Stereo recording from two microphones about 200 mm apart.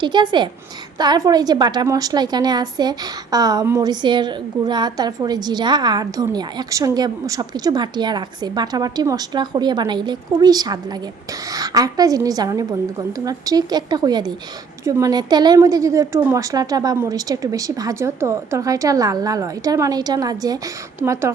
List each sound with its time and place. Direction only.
0.0 s a woman's voice: 20° right (ahead or behind)